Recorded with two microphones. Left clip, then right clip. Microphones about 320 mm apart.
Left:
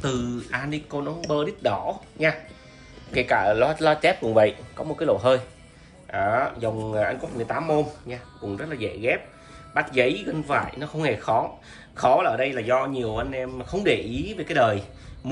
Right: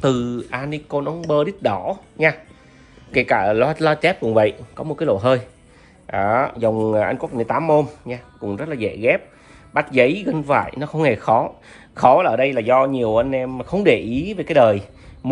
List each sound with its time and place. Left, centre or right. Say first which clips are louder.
0.0 s a man's voice: right 8 dB; centre